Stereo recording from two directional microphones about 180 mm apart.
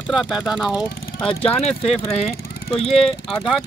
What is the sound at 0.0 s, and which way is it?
Speech, centre (ahead or behind).